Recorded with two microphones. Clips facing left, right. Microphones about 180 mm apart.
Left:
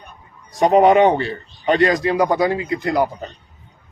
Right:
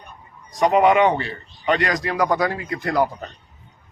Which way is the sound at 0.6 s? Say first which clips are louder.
Left 4 dB; 35° left (ahead or behind).